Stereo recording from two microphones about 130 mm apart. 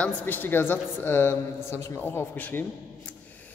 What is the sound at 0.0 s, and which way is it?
A man's voice, 15° left (ahead or behind).